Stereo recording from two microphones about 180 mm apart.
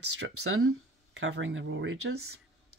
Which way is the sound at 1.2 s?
90° right.